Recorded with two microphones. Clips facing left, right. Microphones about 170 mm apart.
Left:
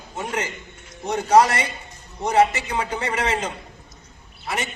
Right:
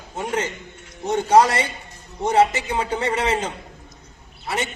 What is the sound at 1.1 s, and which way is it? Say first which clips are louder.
A man's voice: right 1 dB; 30° right (ahead or behind).